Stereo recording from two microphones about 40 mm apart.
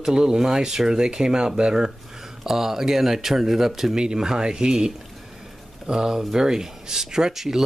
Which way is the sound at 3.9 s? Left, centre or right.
Centre.